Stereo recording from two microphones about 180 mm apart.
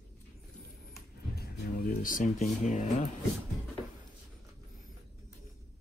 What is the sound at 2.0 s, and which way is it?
Speech, 45° left (ahead or behind).